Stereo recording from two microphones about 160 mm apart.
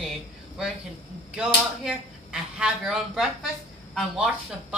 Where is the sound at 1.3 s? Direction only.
5° right (ahead or behind).